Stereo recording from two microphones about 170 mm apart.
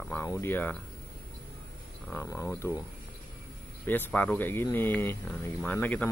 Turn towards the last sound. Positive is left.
turn(degrees=10)  # may be behind; listen again after turning